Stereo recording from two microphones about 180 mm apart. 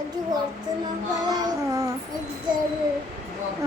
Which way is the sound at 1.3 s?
20° right (ahead or behind).